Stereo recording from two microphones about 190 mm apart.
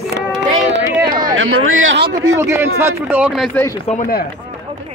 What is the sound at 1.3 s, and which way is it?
Speech, 90° right.